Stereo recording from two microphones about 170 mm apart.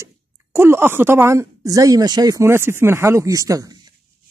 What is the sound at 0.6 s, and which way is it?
Speech, 15° right (ahead or behind).